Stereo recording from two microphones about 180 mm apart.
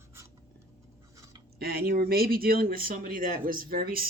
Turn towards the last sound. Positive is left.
turn(degrees=-55)  # may be behind; listen again after turning